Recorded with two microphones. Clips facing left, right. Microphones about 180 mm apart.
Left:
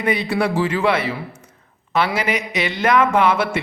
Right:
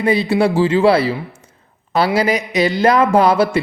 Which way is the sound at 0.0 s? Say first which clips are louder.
Right 5 dB; 30° right (ahead or behind).